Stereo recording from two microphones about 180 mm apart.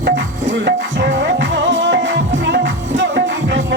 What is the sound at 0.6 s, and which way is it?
Music, 75° right (ahead or behind).